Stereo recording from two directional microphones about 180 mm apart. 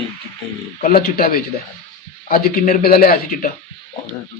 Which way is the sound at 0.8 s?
55° left (ahead or behind).